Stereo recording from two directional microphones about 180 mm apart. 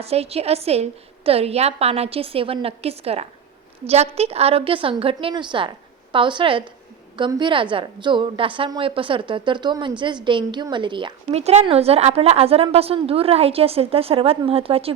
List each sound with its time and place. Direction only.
0.0 s a woman's voice: 35° right (ahead or behind)